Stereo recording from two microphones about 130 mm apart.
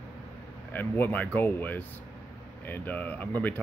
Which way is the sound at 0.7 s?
15° left (ahead or behind).